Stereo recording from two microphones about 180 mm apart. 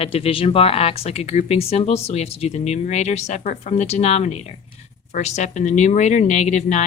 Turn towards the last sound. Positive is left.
turn(degrees=40)  # may be behind; listen again after turning